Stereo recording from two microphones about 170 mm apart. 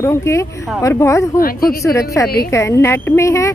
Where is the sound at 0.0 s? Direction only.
15° left (ahead or behind).